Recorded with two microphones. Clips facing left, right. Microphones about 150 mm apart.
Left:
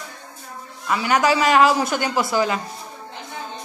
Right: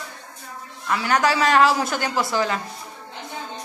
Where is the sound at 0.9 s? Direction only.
10° left (ahead or behind).